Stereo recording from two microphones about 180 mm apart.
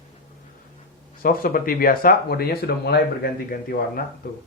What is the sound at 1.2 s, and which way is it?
Speech, 55° left (ahead or behind).